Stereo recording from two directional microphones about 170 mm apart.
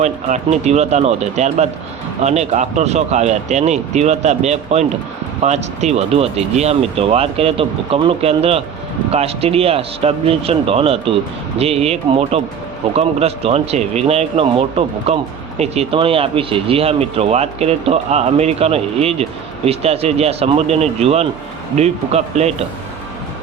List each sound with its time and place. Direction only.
0.0 s speech: 40° right (ahead or behind)